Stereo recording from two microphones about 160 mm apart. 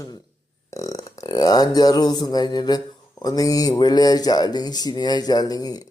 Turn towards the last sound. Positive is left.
turn(degrees=25)  # may be behind; listen again after turning